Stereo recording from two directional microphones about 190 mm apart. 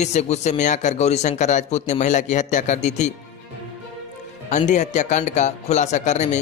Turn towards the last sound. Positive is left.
turn(degrees=40)  # may be behind; listen again after turning